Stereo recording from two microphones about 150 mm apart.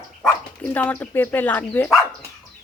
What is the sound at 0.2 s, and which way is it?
Speech, 10° left (ahead or behind).